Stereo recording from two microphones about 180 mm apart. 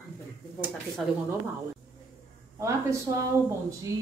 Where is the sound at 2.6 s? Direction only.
15° right (ahead or behind).